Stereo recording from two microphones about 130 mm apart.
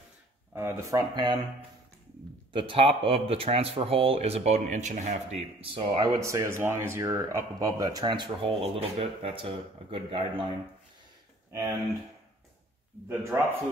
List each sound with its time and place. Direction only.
0.6 s speech: 20° right (ahead or behind)
2.5 s speech: 45° right (ahead or behind)
6.1 s speech: 25° right (ahead or behind); by 10.4 s 40° right (ahead or behind)
13.1 s speech: 20° right (ahead or behind)